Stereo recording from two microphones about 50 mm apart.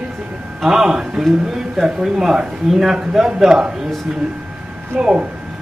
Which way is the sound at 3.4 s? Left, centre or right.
Centre.